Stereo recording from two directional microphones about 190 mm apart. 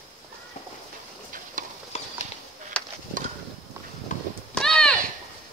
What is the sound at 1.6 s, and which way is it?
Clip-clop, 45° right (ahead or behind).